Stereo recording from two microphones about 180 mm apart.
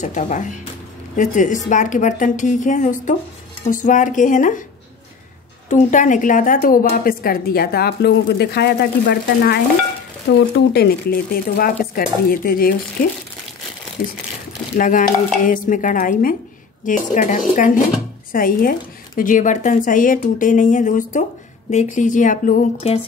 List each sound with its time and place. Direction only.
0.0 s speech: 40° left (ahead or behind)
5.7 s a woman's voice: 45° left (ahead or behind)
14.0 s a woman's voice: 55° left (ahead or behind)